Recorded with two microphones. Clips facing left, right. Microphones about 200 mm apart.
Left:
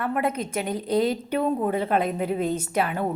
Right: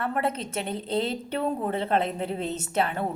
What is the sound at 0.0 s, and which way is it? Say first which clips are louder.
Speech: left 2 dB; 30° right (ahead or behind).